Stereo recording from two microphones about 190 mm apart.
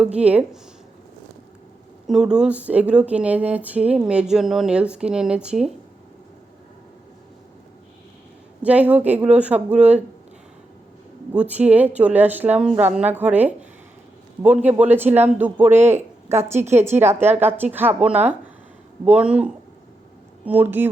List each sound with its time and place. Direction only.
0.0 s speech: 5° right (ahead or behind)
2.0 s speech: 5° right (ahead or behind)
8.6 s speech: 5° right (ahead or behind)
11.3 s speech: 10° right (ahead or behind)
16.6 s a woman's voice: 35° right (ahead or behind)
17.0 s speech: 10° right (ahead or behind)